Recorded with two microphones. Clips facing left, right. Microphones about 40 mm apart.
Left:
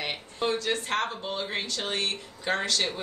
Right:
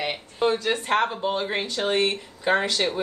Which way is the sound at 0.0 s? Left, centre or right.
Centre.